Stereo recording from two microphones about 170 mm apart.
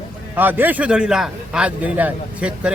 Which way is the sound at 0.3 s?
10° right (ahead or behind).